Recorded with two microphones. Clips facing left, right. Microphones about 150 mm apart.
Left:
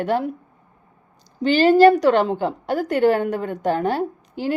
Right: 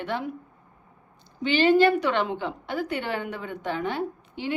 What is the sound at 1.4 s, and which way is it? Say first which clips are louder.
A woman's voice: left 6 dB; 40° left (ahead or behind).